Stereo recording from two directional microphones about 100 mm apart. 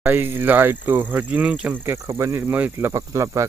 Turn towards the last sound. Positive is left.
turn(degrees=-30)  # may be behind; listen again after turning